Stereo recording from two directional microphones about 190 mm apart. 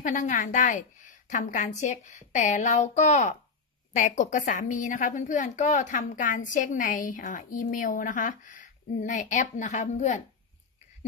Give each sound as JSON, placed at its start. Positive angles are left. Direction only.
{"t": 0.0, "sound": "a woman's voice", "side_deg": 40}